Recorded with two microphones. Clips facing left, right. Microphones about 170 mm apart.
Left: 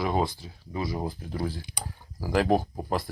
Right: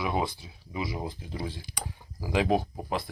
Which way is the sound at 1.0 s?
35° left (ahead or behind).